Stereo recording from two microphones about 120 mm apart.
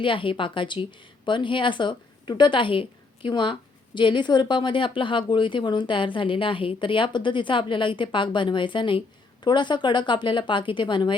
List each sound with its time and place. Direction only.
0.0 s a woman's voice: 45° left (ahead or behind)